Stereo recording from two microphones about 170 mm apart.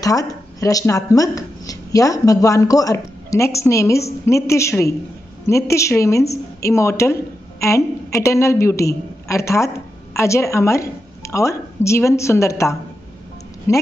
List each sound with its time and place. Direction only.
0.0 s a woman's voice: 20° left (ahead or behind)